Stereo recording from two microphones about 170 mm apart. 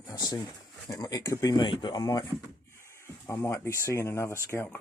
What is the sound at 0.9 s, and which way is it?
Speech, 20° left (ahead or behind).